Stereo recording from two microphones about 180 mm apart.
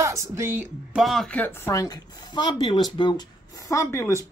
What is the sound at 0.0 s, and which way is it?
Speech, 15° right (ahead or behind).